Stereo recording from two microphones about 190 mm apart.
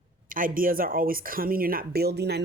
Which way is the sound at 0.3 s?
45° right (ahead or behind).